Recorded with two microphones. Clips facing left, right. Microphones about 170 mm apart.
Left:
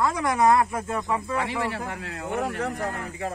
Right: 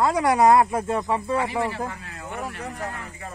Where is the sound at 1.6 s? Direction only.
75° left (ahead or behind).